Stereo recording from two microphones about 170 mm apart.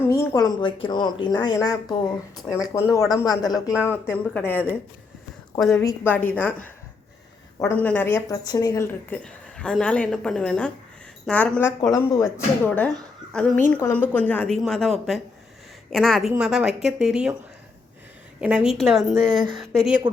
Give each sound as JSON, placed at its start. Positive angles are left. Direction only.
{"t": 0.1, "sound": "a woman's voice", "side_deg": 20}
{"t": 5.8, "sound": "a woman's voice", "side_deg": 10}
{"t": 18.3, "sound": "a woman's voice", "side_deg": -5}